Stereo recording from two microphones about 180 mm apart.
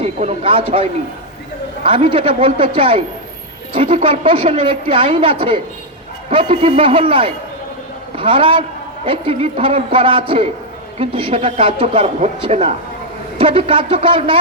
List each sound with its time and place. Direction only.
0.0 s a woman's voice: 35° right (ahead or behind)